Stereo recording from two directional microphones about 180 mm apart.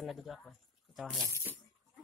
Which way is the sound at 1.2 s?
15° right (ahead or behind).